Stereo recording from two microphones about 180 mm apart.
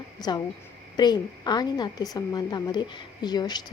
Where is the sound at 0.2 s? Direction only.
20° left (ahead or behind).